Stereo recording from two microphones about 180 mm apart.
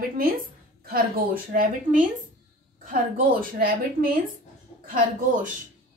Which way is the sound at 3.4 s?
50° right (ahead or behind).